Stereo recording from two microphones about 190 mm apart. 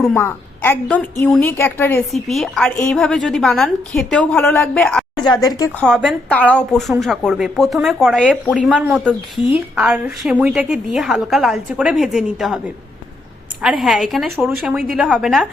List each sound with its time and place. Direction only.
0.1 s a woman's voice: 10° left (ahead or behind)
5.1 s a woman's voice: 25° left (ahead or behind)
5.8 s speech: centre (ahead or behind)
13.6 s speech: 5° right (ahead or behind)